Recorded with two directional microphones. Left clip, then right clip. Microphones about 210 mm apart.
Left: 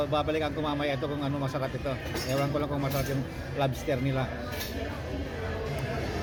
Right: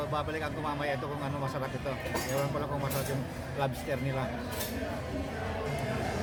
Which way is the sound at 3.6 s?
10° left (ahead or behind).